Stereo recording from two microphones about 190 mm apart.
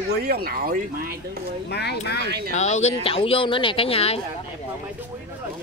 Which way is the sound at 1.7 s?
60° left (ahead or behind).